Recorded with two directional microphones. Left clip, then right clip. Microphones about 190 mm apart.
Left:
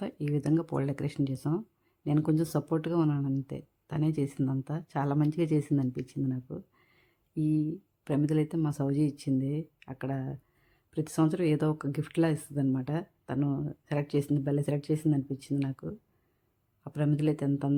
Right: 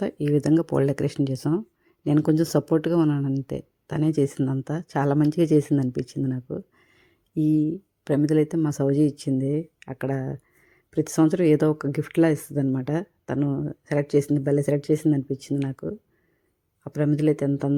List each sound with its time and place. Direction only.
0.0 s speech: 25° right (ahead or behind)